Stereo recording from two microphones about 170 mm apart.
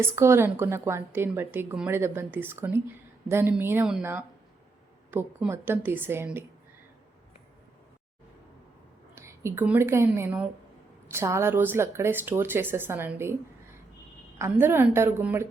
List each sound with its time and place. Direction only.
0.0 s a woman's voice: 15° right (ahead or behind)
9.1 s a woman's voice: 15° right (ahead or behind)
14.3 s a woman's voice: 15° right (ahead or behind)